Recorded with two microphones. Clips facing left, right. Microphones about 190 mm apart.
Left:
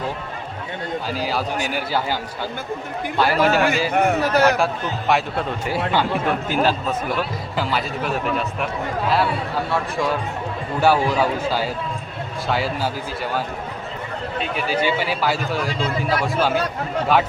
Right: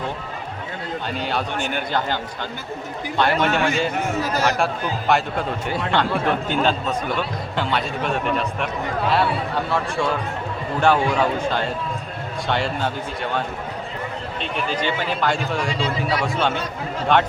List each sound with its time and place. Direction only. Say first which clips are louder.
1.0 s a man's voice: even; 5° left (ahead or behind)
3.2 s a man's voice: left 2 dB; 5° left (ahead or behind)
3.9 s a man's voice: left 5 dB; 60° left (ahead or behind)
4.5 s a man's voice: left 1 dB; centre (ahead or behind)
14.3 s a man's voice: left 3 dB; 5° left (ahead or behind)